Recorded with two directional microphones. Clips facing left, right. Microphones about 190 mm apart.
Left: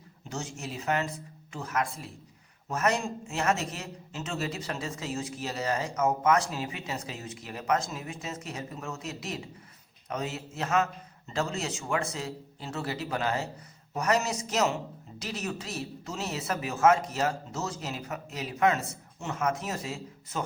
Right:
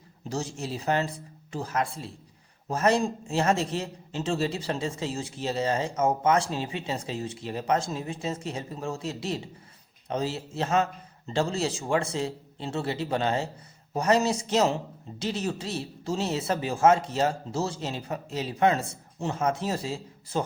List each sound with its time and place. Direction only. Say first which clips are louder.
0.3 s a man's voice: right 5 dB; 35° right (ahead or behind)